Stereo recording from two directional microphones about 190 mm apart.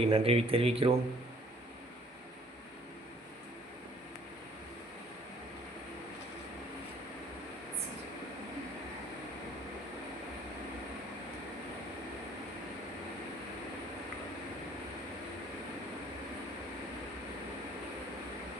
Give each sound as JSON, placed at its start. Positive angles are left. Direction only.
{"t": 0.0, "sound": "speech", "side_deg": -30}